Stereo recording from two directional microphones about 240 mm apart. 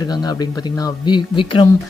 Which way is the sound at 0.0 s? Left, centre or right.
Centre.